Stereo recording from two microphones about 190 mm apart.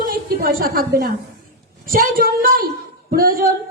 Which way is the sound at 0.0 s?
50° right (ahead or behind).